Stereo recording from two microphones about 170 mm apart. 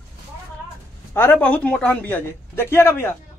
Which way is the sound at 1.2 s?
10° left (ahead or behind).